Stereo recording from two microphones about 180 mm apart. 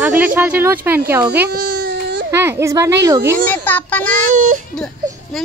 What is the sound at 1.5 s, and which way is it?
Baby cry, 60° right (ahead or behind).